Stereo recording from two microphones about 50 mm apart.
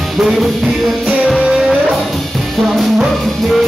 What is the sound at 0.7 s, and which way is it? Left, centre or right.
Music, centre.